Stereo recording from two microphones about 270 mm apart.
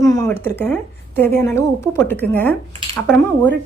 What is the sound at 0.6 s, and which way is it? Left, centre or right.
A woman's voice, centre.